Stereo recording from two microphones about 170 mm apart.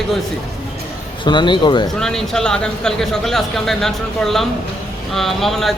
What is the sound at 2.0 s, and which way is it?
Speech, 5° left (ahead or behind).